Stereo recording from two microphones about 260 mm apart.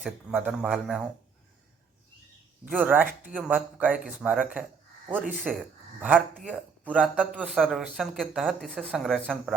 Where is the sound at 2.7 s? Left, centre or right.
Centre.